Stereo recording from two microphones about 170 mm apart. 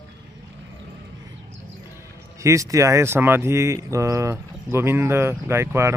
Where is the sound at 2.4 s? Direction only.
20° right (ahead or behind).